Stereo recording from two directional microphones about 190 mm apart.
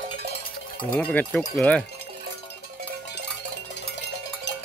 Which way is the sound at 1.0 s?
5° left (ahead or behind).